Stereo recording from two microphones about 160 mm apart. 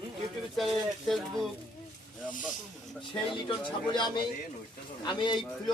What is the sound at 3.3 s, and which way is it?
Speech, 30° left (ahead or behind).